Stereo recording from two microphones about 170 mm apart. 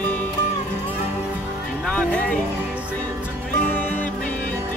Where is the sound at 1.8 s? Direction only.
5° left (ahead or behind).